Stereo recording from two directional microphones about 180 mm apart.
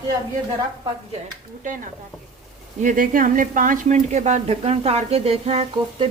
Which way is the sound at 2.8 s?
50° right (ahead or behind).